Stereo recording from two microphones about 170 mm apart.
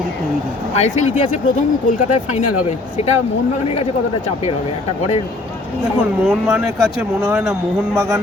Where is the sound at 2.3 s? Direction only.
40° left (ahead or behind).